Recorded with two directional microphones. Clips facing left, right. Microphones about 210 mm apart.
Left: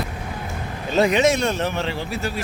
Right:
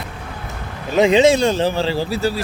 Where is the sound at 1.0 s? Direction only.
25° right (ahead or behind).